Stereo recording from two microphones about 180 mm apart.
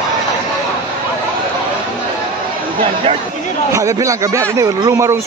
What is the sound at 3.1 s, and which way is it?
Speech, 30° right (ahead or behind).